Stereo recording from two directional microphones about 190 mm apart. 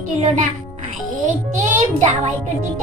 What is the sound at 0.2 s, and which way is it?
A child's voice, 40° right (ahead or behind).